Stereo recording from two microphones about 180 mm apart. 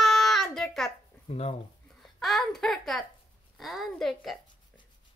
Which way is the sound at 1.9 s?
Centre (ahead or behind).